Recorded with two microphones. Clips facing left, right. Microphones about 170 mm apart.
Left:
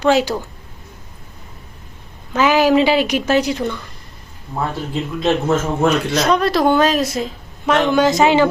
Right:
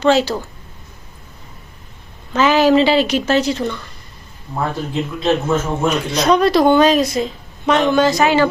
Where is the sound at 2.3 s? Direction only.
10° left (ahead or behind).